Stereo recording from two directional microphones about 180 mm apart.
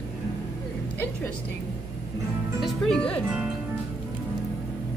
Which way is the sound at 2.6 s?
5° left (ahead or behind).